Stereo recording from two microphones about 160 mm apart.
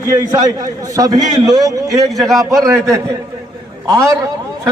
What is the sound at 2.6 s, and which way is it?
A man's voice, 20° right (ahead or behind).